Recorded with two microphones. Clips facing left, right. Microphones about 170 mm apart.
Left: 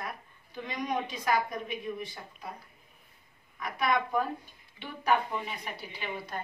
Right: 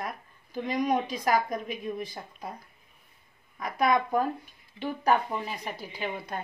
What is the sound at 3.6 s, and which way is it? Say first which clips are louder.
A woman's voice: right 4 dB; 45° right (ahead or behind).